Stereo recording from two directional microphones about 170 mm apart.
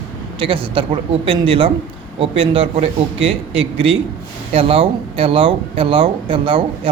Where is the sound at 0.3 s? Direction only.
30° right (ahead or behind).